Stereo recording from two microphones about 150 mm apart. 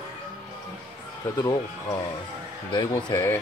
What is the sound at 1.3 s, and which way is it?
Speech, 25° left (ahead or behind).